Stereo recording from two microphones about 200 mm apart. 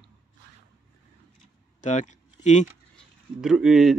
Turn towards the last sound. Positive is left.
turn(degrees=0)  # may be behind; listen again after turning